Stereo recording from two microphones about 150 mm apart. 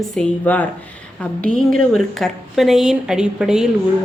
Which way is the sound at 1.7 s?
Centre (ahead or behind).